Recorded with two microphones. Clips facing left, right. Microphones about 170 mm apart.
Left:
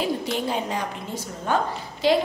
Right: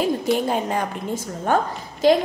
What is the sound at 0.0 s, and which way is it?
A woman's voice, 50° right (ahead or behind).